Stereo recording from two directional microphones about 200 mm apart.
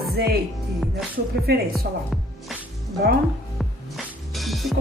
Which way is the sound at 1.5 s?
50° right (ahead or behind).